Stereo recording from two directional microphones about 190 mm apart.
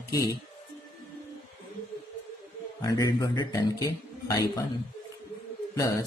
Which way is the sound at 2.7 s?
20° left (ahead or behind).